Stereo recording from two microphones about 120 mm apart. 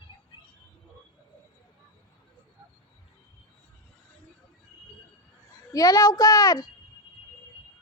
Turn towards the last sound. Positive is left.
turn(degrees=30)  # may be behind; listen again after turning